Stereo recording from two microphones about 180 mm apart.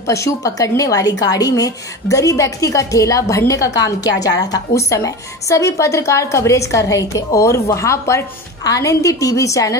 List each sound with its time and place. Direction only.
0.0 s a woman's voice: 15° left (ahead or behind)